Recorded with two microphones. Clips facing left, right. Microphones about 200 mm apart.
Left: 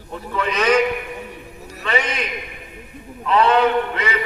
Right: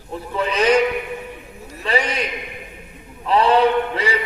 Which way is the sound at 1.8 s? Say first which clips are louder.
Right 1 dB; 35° right (ahead or behind).